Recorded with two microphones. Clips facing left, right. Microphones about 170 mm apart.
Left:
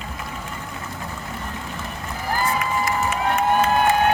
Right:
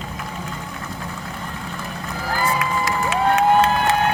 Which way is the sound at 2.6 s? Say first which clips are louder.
Right 1 dB; 90° right.